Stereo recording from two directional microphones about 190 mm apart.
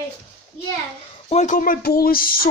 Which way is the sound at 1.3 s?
40° left (ahead or behind).